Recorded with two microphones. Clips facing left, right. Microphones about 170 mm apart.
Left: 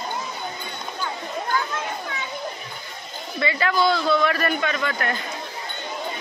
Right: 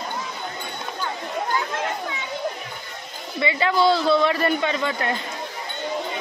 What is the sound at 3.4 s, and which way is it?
A man's voice, 20° right (ahead or behind).